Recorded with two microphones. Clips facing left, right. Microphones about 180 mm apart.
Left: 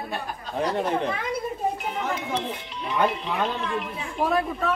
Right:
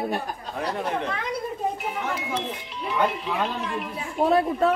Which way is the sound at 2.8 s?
Centre (ahead or behind).